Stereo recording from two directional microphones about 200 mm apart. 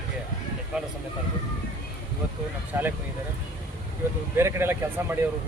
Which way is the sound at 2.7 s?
10° right (ahead or behind).